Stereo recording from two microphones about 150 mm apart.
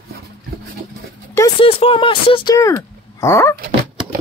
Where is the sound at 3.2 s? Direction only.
20° left (ahead or behind).